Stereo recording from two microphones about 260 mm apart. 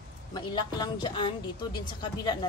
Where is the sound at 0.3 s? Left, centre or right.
Centre.